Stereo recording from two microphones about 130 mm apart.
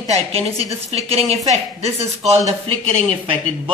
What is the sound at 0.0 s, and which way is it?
Speech, 55° right (ahead or behind).